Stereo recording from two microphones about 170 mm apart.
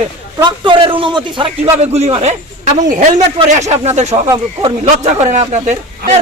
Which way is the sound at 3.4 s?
40° right (ahead or behind).